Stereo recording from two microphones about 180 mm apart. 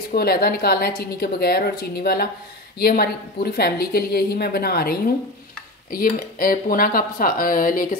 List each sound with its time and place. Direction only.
0.1 s a woman's voice: 60° left (ahead or behind)